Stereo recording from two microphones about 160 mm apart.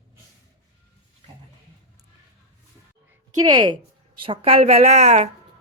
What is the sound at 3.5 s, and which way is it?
A woman's voice, 30° right (ahead or behind).